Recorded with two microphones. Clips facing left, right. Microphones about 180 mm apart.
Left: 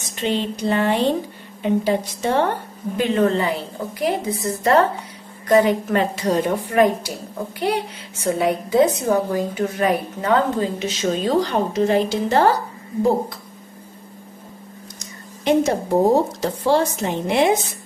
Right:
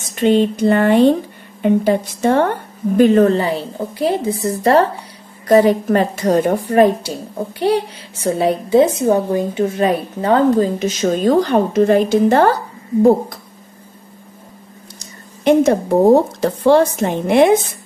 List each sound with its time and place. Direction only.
0.1 s speech: 55° right (ahead or behind)
3.0 s a woman's voice: 40° right (ahead or behind)
15.4 s a woman's voice: 60° right (ahead or behind)